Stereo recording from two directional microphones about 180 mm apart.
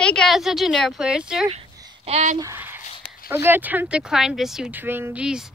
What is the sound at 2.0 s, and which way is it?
Speech, 40° right (ahead or behind).